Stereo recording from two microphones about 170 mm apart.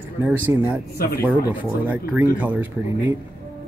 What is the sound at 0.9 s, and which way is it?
Speech, 65° left (ahead or behind).